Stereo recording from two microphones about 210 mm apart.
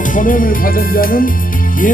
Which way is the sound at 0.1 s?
40° left (ahead or behind).